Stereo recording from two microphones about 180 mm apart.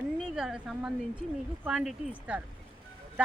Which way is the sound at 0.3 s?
Centre (ahead or behind).